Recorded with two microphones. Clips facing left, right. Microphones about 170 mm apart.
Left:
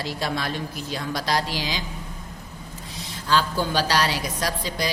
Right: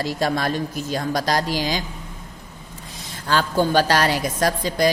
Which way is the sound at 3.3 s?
50° right (ahead or behind).